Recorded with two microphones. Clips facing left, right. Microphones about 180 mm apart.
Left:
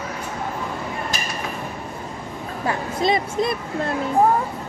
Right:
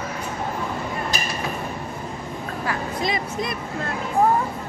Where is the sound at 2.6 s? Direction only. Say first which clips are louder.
Left 4 dB; 25° left (ahead or behind).